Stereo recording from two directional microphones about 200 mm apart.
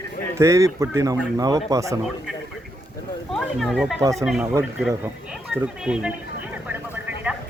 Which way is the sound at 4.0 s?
15° right (ahead or behind).